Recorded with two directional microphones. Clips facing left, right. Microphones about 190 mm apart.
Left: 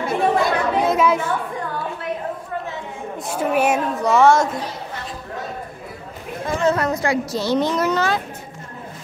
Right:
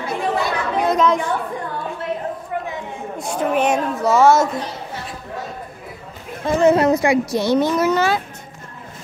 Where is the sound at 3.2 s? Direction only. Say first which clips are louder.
Even; 5° left (ahead or behind).